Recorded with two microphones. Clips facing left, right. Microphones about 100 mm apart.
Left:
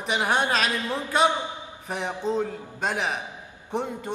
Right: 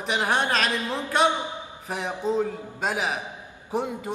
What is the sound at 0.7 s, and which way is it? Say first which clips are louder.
Speech: even; 20° right (ahead or behind).